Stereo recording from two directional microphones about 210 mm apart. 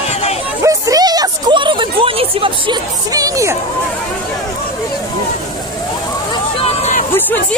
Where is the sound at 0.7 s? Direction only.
15° right (ahead or behind).